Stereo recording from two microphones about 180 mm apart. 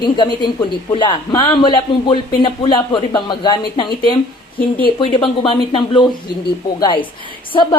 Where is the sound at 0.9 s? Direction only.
25° left (ahead or behind).